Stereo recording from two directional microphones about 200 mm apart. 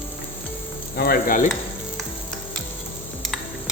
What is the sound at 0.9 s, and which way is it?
Stir, 50° left (ahead or behind).